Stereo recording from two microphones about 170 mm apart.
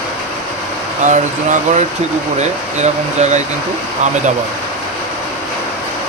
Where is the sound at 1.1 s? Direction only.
45° right (ahead or behind).